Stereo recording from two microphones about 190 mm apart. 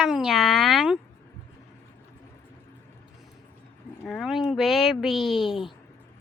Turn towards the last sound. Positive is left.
turn(degrees=0)  # may be behind; listen again after turning